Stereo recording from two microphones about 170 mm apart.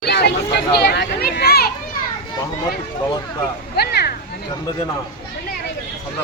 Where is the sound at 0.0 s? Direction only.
80° left.